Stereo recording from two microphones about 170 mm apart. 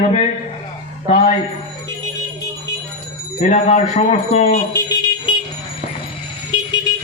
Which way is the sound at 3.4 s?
45° left (ahead or behind).